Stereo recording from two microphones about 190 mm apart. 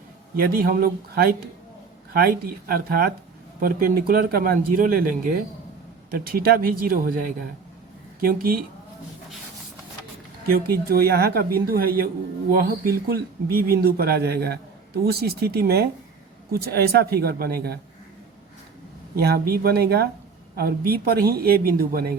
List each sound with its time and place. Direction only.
0.3 s speech: 50° right (ahead or behind)
2.2 s speech: 50° right (ahead or behind)
10.4 s speech: 55° right (ahead or behind)
19.1 s speech: 55° right (ahead or behind)